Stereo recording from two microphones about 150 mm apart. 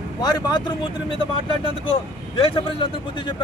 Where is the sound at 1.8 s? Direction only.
35° left (ahead or behind).